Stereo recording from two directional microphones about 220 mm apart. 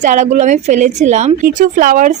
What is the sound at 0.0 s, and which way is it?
A woman's voice, 35° right (ahead or behind).